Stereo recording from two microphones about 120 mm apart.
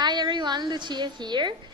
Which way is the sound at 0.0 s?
35° right (ahead or behind).